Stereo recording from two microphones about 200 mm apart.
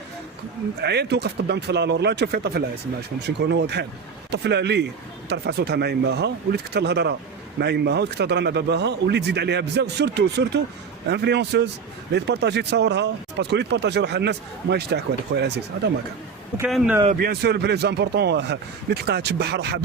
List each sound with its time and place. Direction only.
0.8 s speech: 55° right (ahead or behind)
16.6 s speech: 5° right (ahead or behind)
17.2 s speech: 50° right (ahead or behind)